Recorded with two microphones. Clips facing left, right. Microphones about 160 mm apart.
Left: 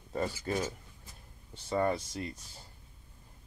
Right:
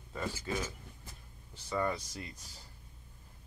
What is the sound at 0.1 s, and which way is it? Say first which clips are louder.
Speech: left 4 dB; 40° left (ahead or behind).